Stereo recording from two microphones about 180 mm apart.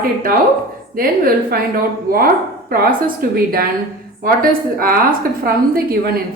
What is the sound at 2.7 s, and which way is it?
A woman's voice, 55° right (ahead or behind).